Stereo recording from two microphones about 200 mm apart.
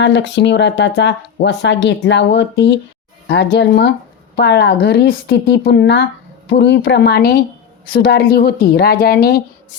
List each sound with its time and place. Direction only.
0.0 s speech: 60° left (ahead or behind)